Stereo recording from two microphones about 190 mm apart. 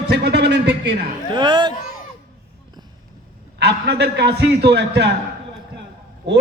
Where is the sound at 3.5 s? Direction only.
60° right (ahead or behind).